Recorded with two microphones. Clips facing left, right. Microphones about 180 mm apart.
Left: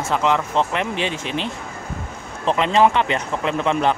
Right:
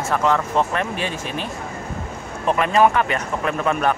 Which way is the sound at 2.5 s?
25° left (ahead or behind).